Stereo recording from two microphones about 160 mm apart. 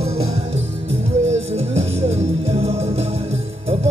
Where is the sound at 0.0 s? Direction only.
40° right (ahead or behind).